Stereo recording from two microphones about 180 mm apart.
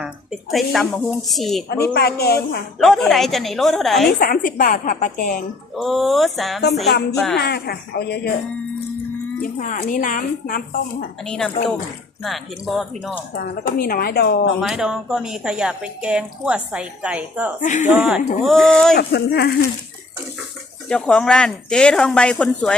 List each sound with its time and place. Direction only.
0.0 s speech: centre (ahead or behind)
1.8 s speech: 60° left (ahead or behind)
2.7 s speech: centre (ahead or behind)
4.2 s speech: 50° left (ahead or behind)
5.7 s speech: centre (ahead or behind)
7.3 s speech: 65° left (ahead or behind)
9.4 s speech: 45° left (ahead or behind)
11.3 s speech: 5° left (ahead or behind)
13.3 s speech: 50° left (ahead or behind)
14.6 s speech: 5° right (ahead or behind)
17.6 s speech: 45° left (ahead or behind)
17.8 s speech: 5° right (ahead or behind)
18.9 s speech: 65° left (ahead or behind)
20.9 s speech: 5° left (ahead or behind)